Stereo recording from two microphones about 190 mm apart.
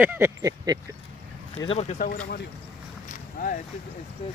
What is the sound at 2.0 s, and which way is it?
Speech, 45° left (ahead or behind).